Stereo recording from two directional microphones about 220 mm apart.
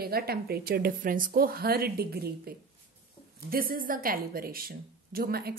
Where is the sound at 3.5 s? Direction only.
40° right (ahead or behind).